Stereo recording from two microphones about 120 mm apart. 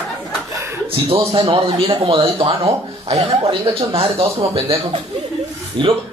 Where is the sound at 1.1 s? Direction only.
50° right (ahead or behind).